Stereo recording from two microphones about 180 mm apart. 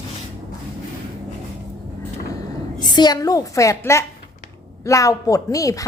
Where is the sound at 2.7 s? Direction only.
25° left (ahead or behind).